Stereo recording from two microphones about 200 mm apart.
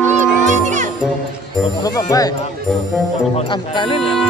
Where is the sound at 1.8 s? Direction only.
20° left (ahead or behind).